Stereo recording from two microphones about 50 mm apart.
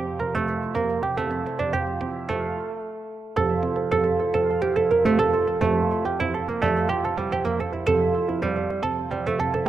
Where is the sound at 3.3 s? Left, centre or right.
Centre.